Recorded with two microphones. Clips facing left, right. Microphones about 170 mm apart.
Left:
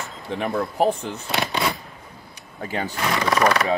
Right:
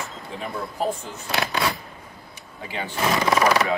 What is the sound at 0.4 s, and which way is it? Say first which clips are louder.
Speech: left 6 dB; 65° left (ahead or behind).